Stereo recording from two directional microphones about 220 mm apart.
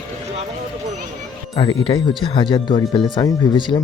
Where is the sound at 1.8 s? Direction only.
20° left (ahead or behind).